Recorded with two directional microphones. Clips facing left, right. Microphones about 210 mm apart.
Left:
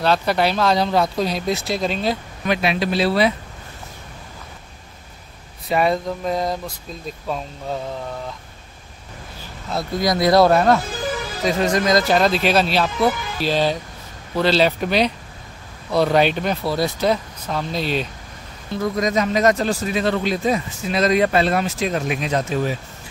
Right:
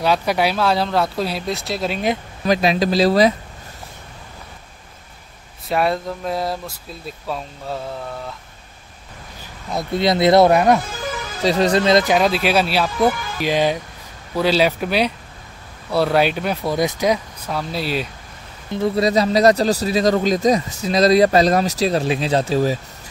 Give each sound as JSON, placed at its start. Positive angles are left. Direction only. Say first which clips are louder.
{"t": 0.0, "sound": "speech", "louder": "even", "side_deg": -10}
{"t": 2.4, "sound": "speech", "louder": "right 3 dB", "side_deg": -35}
{"t": 5.7, "sound": "speech", "louder": "left 1 dB", "side_deg": 0}
{"t": 9.9, "sound": "speech", "louder": "right 2 dB", "side_deg": -25}
{"t": 11.4, "sound": "speech", "louder": "right 3 dB", "side_deg": -35}
{"t": 12.1, "sound": "speech", "louder": "even", "side_deg": -10}
{"t": 18.7, "sound": "speech", "louder": "right 3 dB", "side_deg": -30}